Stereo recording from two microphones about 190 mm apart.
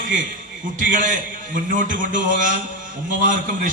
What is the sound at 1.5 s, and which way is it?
A man's voice, 45° right (ahead or behind).